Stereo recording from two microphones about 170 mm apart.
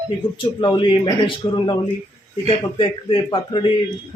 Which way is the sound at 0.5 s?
30° left (ahead or behind).